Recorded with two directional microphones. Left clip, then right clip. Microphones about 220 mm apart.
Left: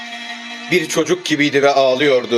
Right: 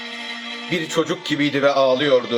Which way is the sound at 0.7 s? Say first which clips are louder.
Left 6 dB; 30° left (ahead or behind).